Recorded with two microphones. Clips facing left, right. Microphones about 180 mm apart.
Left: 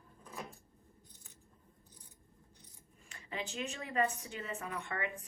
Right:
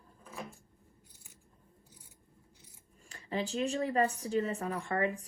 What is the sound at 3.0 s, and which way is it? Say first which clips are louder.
A woman's voice: right 7 dB; 35° right (ahead or behind).